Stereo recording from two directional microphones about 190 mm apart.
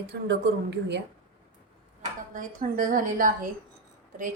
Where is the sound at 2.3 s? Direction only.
45° right (ahead or behind).